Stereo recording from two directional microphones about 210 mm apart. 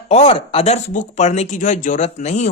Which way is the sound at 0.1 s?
30° left (ahead or behind).